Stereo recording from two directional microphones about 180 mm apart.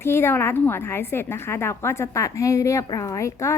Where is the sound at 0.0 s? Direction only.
15° left (ahead or behind).